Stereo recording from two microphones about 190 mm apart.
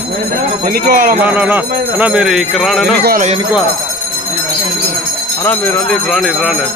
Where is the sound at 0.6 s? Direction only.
50° right (ahead or behind).